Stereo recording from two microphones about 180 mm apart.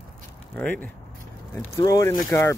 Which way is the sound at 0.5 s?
10° left (ahead or behind).